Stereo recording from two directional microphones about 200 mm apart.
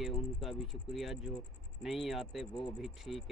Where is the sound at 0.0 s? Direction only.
Centre (ahead or behind).